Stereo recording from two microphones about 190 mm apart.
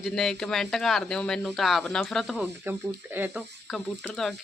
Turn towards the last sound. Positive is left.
turn(degrees=0)  # may be behind; listen again after turning